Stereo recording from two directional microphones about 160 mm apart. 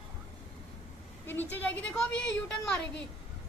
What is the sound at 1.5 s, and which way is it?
Speech, 10° left (ahead or behind).